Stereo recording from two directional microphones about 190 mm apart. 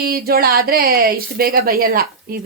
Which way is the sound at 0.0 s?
50° right (ahead or behind).